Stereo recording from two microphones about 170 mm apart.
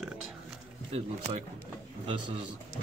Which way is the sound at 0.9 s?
35° right (ahead or behind).